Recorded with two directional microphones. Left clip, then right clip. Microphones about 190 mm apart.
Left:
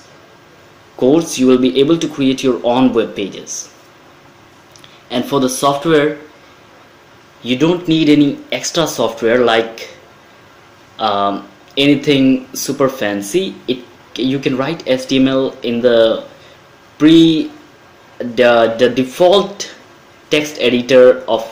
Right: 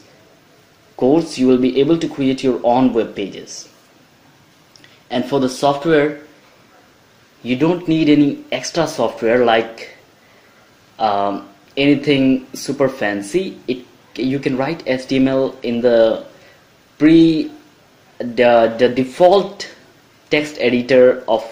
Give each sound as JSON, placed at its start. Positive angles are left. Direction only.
{"t": 0.9, "sound": "speech", "side_deg": -10}
{"t": 5.1, "sound": "speech", "side_deg": -10}
{"t": 7.4, "sound": "speech", "side_deg": -15}
{"t": 11.0, "sound": "speech", "side_deg": -15}
{"t": 18.1, "sound": "speech", "side_deg": -15}